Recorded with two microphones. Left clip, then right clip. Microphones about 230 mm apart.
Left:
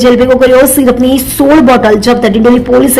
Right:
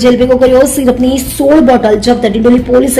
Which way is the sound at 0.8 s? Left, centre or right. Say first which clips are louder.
Left 2 dB; centre.